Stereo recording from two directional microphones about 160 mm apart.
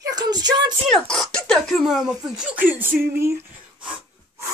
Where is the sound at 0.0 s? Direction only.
25° right (ahead or behind).